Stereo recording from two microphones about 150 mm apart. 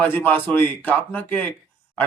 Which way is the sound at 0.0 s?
10° left (ahead or behind).